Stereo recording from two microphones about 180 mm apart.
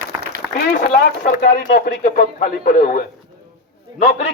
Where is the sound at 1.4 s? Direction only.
65° left (ahead or behind); by 3.0 s 45° left (ahead or behind).